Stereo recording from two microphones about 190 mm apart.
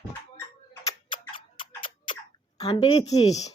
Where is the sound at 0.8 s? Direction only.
25° left (ahead or behind).